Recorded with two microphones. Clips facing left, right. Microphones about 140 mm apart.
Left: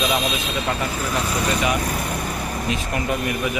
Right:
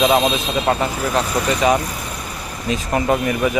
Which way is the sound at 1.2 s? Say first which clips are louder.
Right 4 dB; 35° right (ahead or behind).